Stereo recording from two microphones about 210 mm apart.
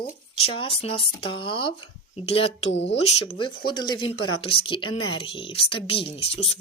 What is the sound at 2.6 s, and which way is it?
Speech, 55° left (ahead or behind).